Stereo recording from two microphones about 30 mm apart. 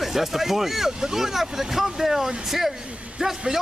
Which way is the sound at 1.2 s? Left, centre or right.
Centre.